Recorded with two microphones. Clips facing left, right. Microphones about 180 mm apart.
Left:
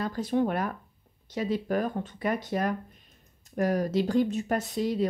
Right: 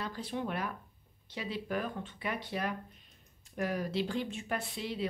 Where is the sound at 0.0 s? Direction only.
45° left (ahead or behind).